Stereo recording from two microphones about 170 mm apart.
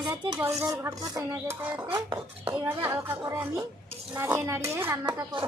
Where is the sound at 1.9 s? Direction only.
30° right (ahead or behind).